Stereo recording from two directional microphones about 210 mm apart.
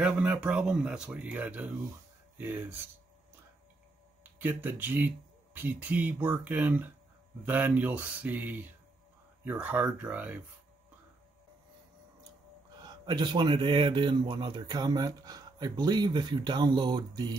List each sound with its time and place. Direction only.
0.0 s speech: 5° right (ahead or behind)
4.2 s speech: 10° right (ahead or behind)
12.8 s speech: 20° right (ahead or behind)